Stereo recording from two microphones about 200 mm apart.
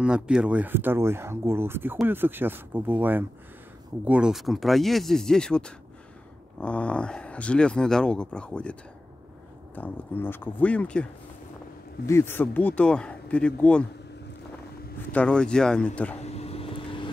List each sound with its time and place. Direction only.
0.0 s speech: 5° right (ahead or behind)
9.8 s speech: 10° left (ahead or behind)
12.1 s speech: 10° left (ahead or behind)
15.1 s speech: 5° left (ahead or behind)
16.2 s vehicle: 30° left (ahead or behind)